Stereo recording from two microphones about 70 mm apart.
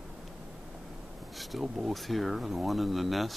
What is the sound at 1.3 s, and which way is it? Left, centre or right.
Speech, centre.